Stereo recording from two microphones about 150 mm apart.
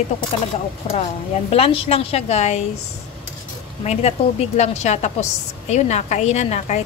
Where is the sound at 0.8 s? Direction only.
45° left (ahead or behind).